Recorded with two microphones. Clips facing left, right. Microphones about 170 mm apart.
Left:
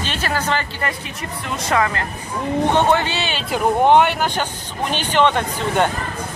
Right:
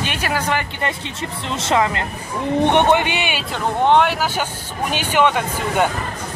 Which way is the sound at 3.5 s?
5° left (ahead or behind).